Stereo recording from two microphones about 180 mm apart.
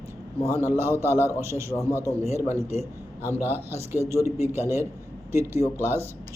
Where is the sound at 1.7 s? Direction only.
15° left (ahead or behind).